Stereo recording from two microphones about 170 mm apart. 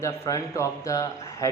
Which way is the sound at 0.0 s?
20° left (ahead or behind).